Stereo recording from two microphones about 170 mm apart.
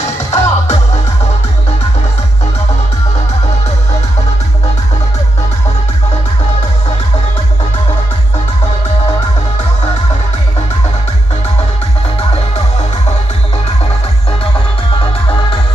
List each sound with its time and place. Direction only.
0.0 s music: 40° left (ahead or behind)
15.2 s music: 30° left (ahead or behind)